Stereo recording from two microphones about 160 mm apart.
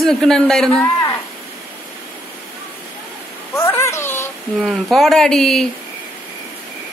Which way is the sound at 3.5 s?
15° left (ahead or behind).